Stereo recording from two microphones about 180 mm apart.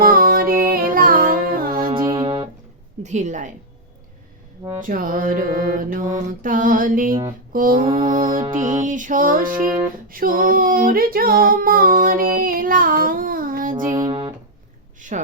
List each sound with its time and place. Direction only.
0.0 s music: 50° right (ahead or behind)
1.9 s music: 25° right (ahead or behind)
3.0 s a woman's voice: 40° right (ahead or behind)
4.8 s music: 50° right (ahead or behind)
7.1 s mantra: 25° right (ahead or behind)
7.5 s mantra: 50° right (ahead or behind)
7.8 s mantra: 25° right (ahead or behind)
8.8 s female singing: 45° right (ahead or behind)
13.9 s music: 25° right (ahead or behind)
15.0 s a sound: 45° right (ahead or behind)